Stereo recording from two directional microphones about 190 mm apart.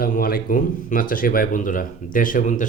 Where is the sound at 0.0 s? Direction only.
50° left (ahead or behind).